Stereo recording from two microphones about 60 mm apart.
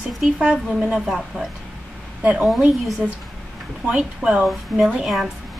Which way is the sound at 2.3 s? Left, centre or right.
Centre.